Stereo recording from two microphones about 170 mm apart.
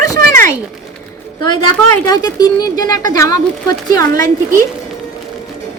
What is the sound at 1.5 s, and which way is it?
Speech, 25° left (ahead or behind).